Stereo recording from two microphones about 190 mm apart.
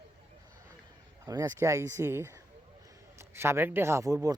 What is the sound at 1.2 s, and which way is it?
A man's voice, 20° right (ahead or behind).